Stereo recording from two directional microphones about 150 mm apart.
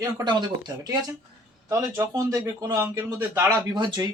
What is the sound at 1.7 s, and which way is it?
Speech, 20° right (ahead or behind).